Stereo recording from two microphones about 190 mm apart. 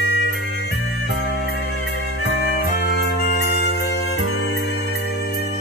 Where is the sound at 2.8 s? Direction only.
60° left (ahead or behind).